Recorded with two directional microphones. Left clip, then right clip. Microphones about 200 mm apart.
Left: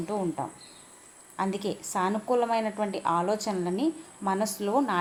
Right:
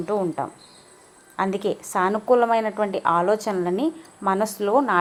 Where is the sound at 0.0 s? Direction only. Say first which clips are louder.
Right 6 dB; 20° right (ahead or behind).